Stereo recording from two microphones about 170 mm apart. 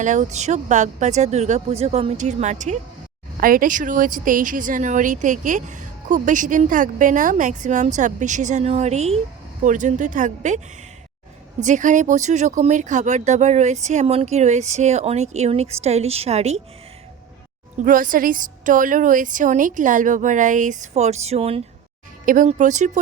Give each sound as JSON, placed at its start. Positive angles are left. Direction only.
{"t": 0.0, "sound": "speech", "side_deg": -45}
{"t": 3.4, "sound": "speech", "side_deg": -55}
{"t": 11.6, "sound": "speech", "side_deg": -45}
{"t": 17.7, "sound": "speech", "side_deg": -55}